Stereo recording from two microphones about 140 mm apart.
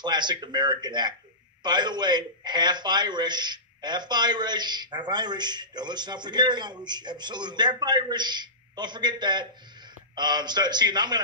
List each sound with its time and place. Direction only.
0.0 s a man's voice: 30° right (ahead or behind)